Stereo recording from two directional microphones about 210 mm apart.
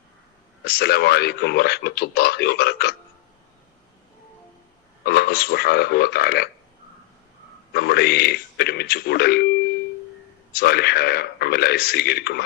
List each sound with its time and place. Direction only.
0.6 s speech: 45° left (ahead or behind)
5.0 s speech: 50° left (ahead or behind)
7.7 s speech: 50° left (ahead or behind)
10.6 s speech: 50° left (ahead or behind)